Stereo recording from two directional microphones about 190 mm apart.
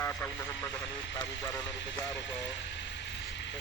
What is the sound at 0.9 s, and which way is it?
Speech, 70° left (ahead or behind).